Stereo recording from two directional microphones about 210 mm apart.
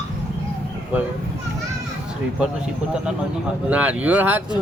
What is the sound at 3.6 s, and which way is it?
Speech, 5° right (ahead or behind).